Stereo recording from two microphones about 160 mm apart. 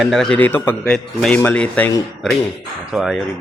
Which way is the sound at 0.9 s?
5° left (ahead or behind).